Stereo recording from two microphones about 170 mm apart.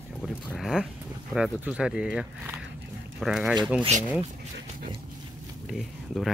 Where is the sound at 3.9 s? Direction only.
45° right (ahead or behind).